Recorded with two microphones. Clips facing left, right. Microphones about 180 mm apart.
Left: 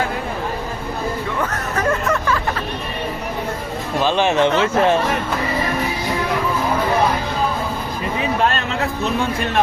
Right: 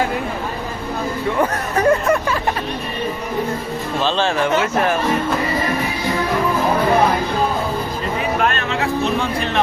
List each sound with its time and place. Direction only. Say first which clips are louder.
1.4 s hubbub: right 6 dB; 30° right (ahead or behind)
4.0 s speech: left 3 dB; 20° left (ahead or behind)